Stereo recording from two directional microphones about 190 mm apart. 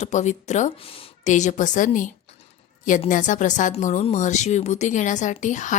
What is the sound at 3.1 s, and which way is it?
Speech, 40° left (ahead or behind).